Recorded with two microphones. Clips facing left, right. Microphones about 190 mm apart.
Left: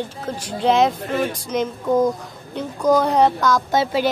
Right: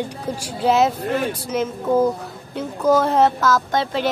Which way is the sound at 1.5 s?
5° right (ahead or behind).